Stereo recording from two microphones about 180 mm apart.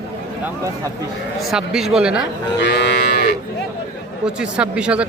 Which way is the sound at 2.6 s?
70° left (ahead or behind).